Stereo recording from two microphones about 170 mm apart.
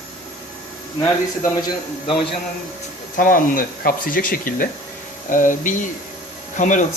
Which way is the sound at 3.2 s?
55° left (ahead or behind).